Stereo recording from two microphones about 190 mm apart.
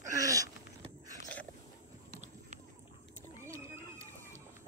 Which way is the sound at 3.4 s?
15° right (ahead or behind).